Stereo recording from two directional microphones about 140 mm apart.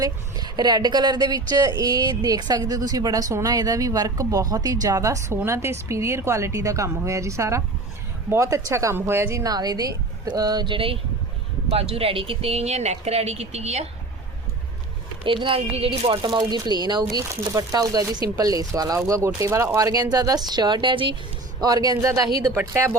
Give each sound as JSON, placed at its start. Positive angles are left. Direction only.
{"t": 0.0, "sound": "speech", "side_deg": -30}
{"t": 15.2, "sound": "speech", "side_deg": -40}